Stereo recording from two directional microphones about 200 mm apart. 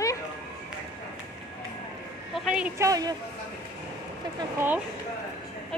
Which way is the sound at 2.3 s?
5° right (ahead or behind).